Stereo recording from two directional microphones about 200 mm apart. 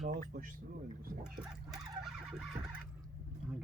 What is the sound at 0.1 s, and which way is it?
Speech, 45° right (ahead or behind).